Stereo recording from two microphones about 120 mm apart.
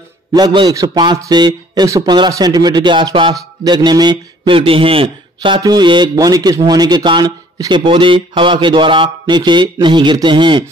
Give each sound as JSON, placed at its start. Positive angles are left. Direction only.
{"t": 0.3, "sound": "a man's voice", "side_deg": -35}